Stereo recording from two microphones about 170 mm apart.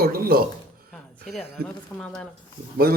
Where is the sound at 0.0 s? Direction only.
60° right (ahead or behind).